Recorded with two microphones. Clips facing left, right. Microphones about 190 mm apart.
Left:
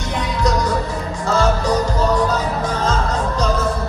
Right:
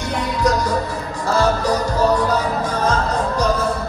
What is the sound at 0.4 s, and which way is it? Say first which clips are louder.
Music: even; 10° right (ahead or behind).